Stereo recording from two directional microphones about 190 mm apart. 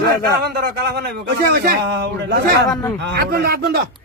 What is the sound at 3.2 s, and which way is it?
Speech, 55° right (ahead or behind).